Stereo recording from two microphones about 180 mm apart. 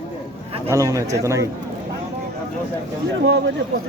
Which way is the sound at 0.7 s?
20° right (ahead or behind).